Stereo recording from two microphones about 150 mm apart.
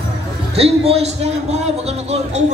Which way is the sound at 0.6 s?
40° right (ahead or behind).